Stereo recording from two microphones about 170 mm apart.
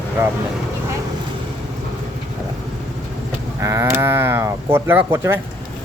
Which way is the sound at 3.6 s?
15° right (ahead or behind).